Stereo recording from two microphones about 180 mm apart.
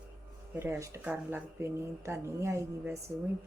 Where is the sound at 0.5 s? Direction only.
15° right (ahead or behind).